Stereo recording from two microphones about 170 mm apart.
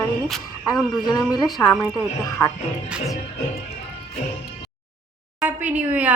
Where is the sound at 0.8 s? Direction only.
Centre (ahead or behind).